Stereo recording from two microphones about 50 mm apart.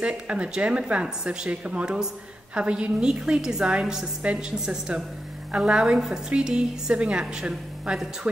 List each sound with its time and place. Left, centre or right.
0.0 s a woman's voice: right
4.2 s a woman's voice: right
5.9 s a woman's voice: centre